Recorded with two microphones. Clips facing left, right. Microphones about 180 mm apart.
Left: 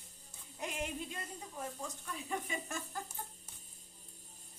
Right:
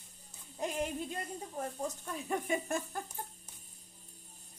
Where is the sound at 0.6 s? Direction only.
35° right (ahead or behind).